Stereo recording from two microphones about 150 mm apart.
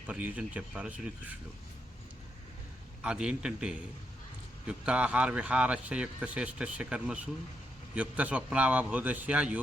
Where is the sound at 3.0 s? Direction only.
5° right (ahead or behind).